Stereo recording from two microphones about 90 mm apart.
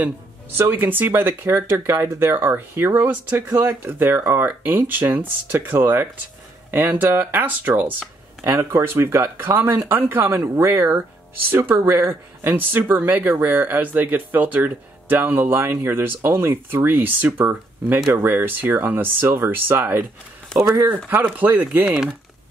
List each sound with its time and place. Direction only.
0.6 s speech: 25° right (ahead or behind)
20.5 s speech: 10° left (ahead or behind)
20.8 s speech: 25° right (ahead or behind)